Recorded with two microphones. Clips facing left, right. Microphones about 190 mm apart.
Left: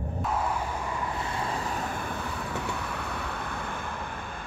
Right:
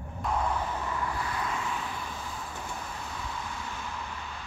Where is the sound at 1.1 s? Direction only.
25° left (ahead or behind).